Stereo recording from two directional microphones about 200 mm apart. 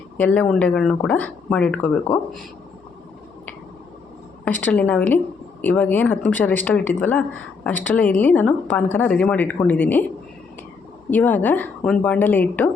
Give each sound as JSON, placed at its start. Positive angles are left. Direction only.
{"t": 0.2, "sound": "speech", "side_deg": 5}
{"t": 4.6, "sound": "speech", "side_deg": 10}
{"t": 11.1, "sound": "speech", "side_deg": 10}